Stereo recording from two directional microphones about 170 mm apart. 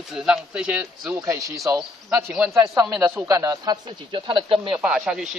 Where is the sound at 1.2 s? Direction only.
20° right (ahead or behind).